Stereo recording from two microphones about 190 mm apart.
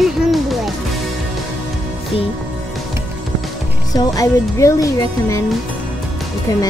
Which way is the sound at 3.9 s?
20° left (ahead or behind).